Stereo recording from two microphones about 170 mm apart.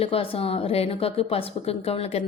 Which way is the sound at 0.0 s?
35° left (ahead or behind).